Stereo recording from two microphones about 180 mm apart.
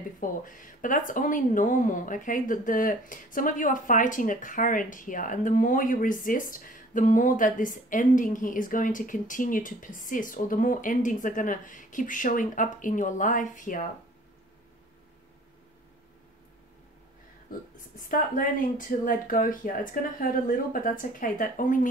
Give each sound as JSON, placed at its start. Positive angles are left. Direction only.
{"t": 0.2, "sound": "speech", "side_deg": 50}
{"t": 17.5, "sound": "speech", "side_deg": 50}